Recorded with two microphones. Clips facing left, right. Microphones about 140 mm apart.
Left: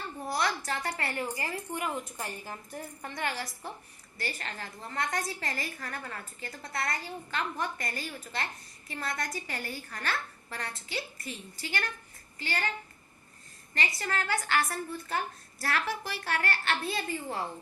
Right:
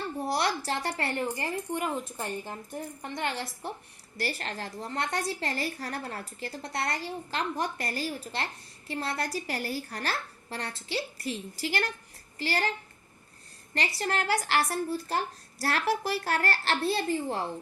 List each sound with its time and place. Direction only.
0.3 s a woman's voice: 30° right (ahead or behind)
4.2 s a woman's voice: 35° right (ahead or behind)
11.2 s a woman's voice: 85° right
12.4 s a woman's voice: 35° right (ahead or behind)
13.7 s a woman's voice: 35° right (ahead or behind)